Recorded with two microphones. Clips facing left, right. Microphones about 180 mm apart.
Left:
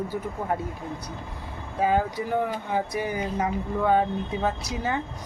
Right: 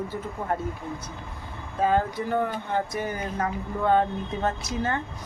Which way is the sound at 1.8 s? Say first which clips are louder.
Even; 10° left (ahead or behind).